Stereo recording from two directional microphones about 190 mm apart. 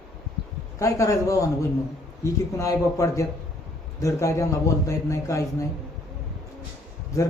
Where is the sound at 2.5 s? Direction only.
15° left (ahead or behind).